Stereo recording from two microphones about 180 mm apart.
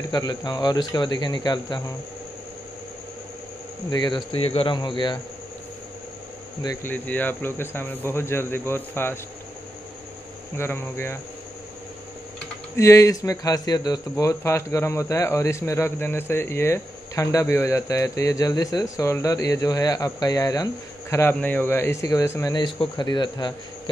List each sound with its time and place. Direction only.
0.1 s speech: 20° left (ahead or behind)
3.9 s speech: 25° left (ahead or behind)
6.6 s speech: 15° left (ahead or behind)
10.5 s speech: 15° left (ahead or behind)
12.7 s speech: 15° left (ahead or behind)